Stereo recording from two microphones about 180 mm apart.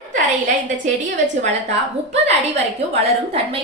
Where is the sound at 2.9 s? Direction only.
30° right (ahead or behind).